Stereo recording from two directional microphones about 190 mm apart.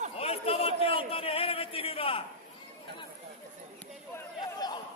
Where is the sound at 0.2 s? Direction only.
30° left (ahead or behind).